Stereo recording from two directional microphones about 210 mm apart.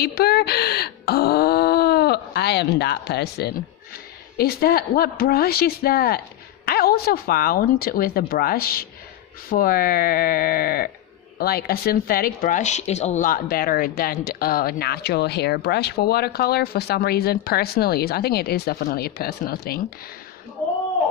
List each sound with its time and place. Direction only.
0.0 s speech: 50° left (ahead or behind)